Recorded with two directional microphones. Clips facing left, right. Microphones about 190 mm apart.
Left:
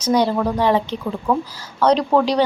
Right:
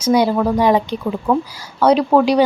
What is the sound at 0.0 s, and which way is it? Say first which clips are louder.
Speech: right 3 dB; 10° right (ahead or behind).